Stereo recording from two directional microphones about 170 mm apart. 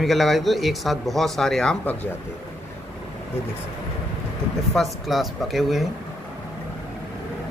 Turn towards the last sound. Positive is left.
turn(degrees=0)  # may be behind; listen again after turning